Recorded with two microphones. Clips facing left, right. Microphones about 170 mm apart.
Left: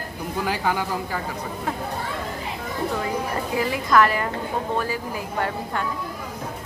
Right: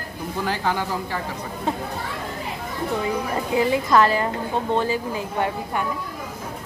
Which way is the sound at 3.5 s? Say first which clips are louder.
Right 2 dB; 25° right (ahead or behind).